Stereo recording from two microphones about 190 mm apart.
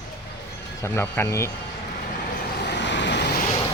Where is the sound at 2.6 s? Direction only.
65° left (ahead or behind).